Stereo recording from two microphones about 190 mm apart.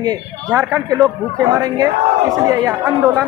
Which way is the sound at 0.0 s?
20° right (ahead or behind).